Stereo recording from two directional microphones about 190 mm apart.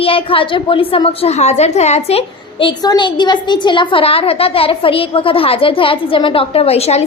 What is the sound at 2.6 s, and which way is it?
A woman's voice, 20° left (ahead or behind).